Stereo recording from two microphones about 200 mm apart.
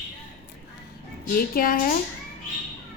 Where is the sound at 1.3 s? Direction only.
45° left (ahead or behind).